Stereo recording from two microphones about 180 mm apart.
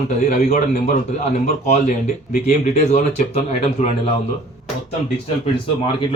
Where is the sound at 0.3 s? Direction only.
40° left (ahead or behind).